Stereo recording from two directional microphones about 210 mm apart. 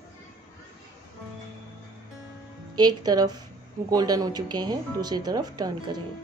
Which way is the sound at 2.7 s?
20° right (ahead or behind).